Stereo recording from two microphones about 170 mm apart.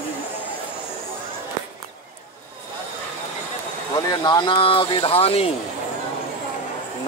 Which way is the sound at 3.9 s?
25° left (ahead or behind).